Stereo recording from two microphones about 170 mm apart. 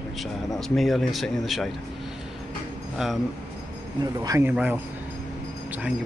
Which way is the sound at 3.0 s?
Centre (ahead or behind).